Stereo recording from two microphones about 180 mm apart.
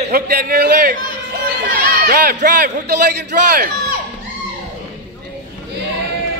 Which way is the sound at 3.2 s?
60° right (ahead or behind).